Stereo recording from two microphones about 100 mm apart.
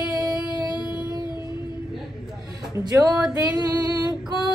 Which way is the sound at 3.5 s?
40° right (ahead or behind).